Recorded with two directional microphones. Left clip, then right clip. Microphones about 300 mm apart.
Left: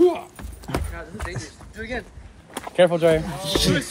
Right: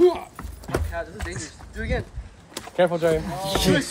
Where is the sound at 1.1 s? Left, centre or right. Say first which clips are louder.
Left 1 dB; centre.